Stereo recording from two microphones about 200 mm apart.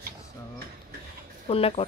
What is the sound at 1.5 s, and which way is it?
Speech, 30° left (ahead or behind).